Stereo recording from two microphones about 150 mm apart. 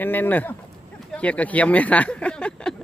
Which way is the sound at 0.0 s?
10° left (ahead or behind).